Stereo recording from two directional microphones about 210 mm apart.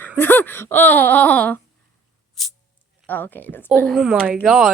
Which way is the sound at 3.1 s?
10° left (ahead or behind).